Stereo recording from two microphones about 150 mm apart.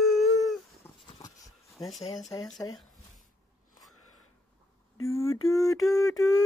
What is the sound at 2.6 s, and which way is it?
Speech, 15° left (ahead or behind).